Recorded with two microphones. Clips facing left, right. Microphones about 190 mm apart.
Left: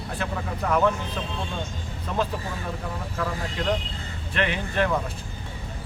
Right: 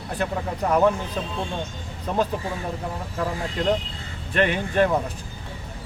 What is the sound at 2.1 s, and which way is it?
Speech, 40° right (ahead or behind).